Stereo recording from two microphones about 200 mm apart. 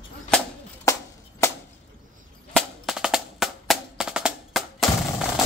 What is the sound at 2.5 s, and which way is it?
Percussion, centre (ahead or behind).